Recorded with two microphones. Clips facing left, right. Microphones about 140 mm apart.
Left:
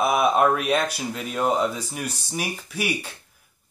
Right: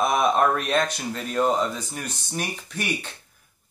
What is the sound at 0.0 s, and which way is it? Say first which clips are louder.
Speech: left 1 dB; 10° left (ahead or behind).